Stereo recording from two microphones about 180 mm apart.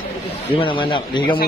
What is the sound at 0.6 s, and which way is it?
Speech, 30° left (ahead or behind).